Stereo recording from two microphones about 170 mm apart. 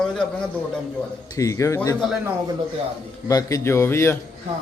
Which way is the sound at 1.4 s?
20° left (ahead or behind).